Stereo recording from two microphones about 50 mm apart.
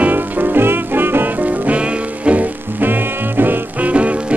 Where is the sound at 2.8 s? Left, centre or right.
Right.